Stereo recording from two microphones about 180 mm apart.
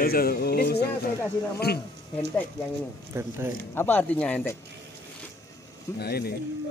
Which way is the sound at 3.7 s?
10° left (ahead or behind).